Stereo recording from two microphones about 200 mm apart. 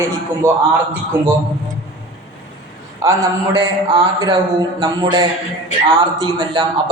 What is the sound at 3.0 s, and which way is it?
A man's voice, 15° right (ahead or behind).